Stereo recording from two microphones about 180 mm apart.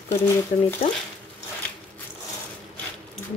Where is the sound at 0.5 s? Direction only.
40° left (ahead or behind).